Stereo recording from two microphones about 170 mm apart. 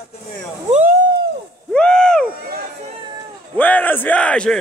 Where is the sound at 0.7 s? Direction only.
40° right (ahead or behind).